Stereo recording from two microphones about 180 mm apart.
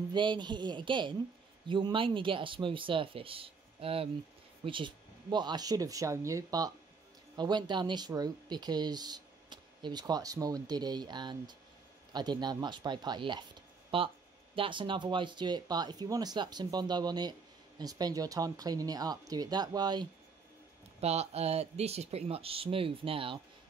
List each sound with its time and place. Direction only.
0.1 s speech: 25° right (ahead or behind)
21.0 s speech: 35° right (ahead or behind)